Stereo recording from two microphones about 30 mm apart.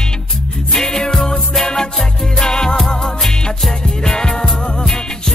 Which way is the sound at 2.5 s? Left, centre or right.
Left.